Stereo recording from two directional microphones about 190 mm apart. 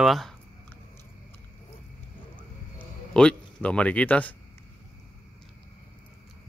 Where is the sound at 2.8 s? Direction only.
5° left (ahead or behind).